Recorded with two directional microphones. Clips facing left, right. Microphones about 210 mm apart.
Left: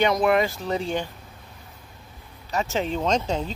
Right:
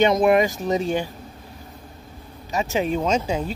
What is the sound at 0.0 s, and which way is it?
Speech, 20° right (ahead or behind).